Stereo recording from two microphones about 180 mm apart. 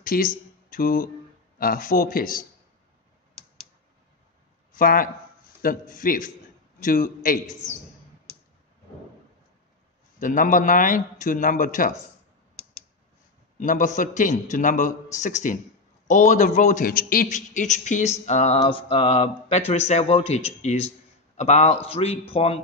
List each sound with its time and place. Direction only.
0.0 s a man's voice: 50° left (ahead or behind)
4.7 s a man's voice: 55° left (ahead or behind)
10.2 s a man's voice: 45° left (ahead or behind)
13.6 s a man's voice: 45° left (ahead or behind)